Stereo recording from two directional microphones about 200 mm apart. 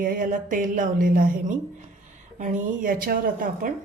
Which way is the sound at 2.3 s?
40° right (ahead or behind).